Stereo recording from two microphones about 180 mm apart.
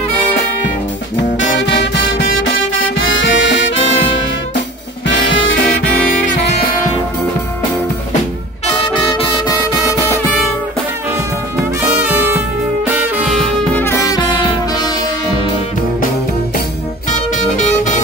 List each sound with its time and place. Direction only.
1.4 s music: 90° left
12.0 s music: 10° right (ahead or behind)
13.3 s music: centre (ahead or behind)
13.8 s music: 20° left (ahead or behind)
17.1 s music: 40° left (ahead or behind)